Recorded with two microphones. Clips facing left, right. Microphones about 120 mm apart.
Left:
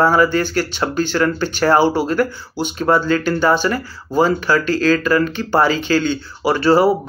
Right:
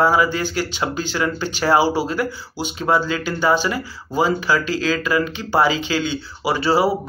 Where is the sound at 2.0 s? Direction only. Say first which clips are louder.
Left 4 dB; 50° left (ahead or behind).